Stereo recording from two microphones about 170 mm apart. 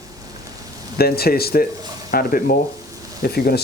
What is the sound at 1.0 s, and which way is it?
Speech, 65° left (ahead or behind).